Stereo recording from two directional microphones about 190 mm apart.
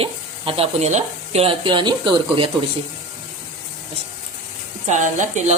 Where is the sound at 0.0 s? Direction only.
30° right (ahead or behind).